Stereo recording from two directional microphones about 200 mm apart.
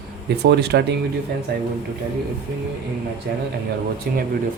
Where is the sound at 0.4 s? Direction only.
55° right (ahead or behind).